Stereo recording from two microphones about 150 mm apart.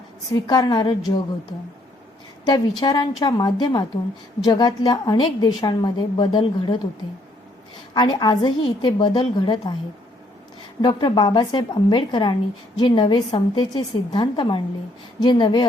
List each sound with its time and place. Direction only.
0.4 s a woman's voice: 30° left (ahead or behind)
2.5 s a woman's voice: 30° left (ahead or behind)
7.9 s a woman's voice: 30° left (ahead or behind)
10.8 s a woman's voice: 30° left (ahead or behind)